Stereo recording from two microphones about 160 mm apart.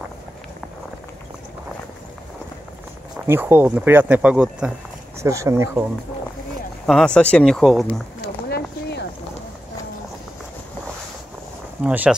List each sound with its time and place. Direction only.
3.2 s speech: 15° right (ahead or behind)
5.2 s speech: 20° right (ahead or behind)
6.9 s speech: 5° left (ahead or behind)
8.5 s a sound: 80° left
11.8 s speech: 10° right (ahead or behind)